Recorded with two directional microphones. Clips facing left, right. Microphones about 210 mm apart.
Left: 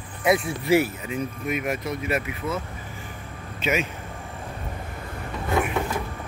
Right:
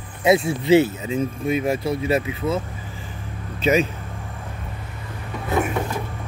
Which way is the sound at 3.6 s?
35° right (ahead or behind).